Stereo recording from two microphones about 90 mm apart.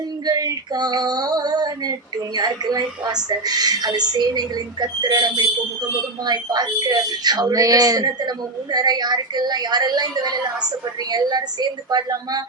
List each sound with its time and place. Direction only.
0.3 s speech: 45° right (ahead or behind)